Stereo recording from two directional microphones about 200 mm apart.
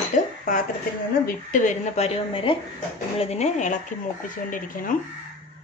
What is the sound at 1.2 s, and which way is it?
A woman's voice, 45° left (ahead or behind).